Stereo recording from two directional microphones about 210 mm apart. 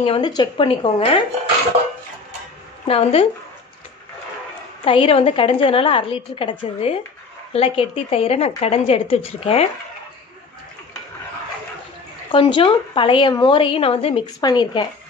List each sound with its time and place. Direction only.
0.0 s a woman's voice: 25° left (ahead or behind)
2.9 s a woman's voice: 30° left (ahead or behind)
4.8 s a woman's voice: 25° left (ahead or behind)
12.3 s a woman's voice: 25° left (ahead or behind)